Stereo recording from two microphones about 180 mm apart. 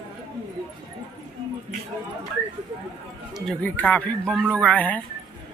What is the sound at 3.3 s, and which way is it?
Speech, 5° left (ahead or behind).